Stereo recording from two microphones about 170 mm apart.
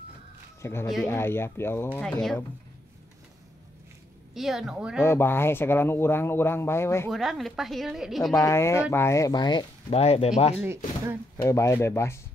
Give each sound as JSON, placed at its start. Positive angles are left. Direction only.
{"t": 0.6, "sound": "speech", "side_deg": 15}
{"t": 4.3, "sound": "a woman's voice", "side_deg": 0}
{"t": 5.0, "sound": "speech", "side_deg": 15}
{"t": 7.1, "sound": "a woman's voice", "side_deg": 0}
{"t": 8.4, "sound": "speech", "side_deg": 15}
{"t": 11.4, "sound": "speech", "side_deg": 20}